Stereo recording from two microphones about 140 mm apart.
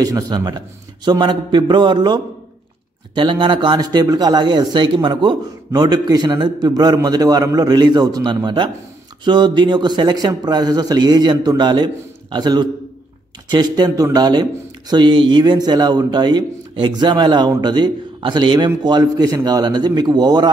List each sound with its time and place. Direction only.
0.0 s speech: 25° right (ahead or behind)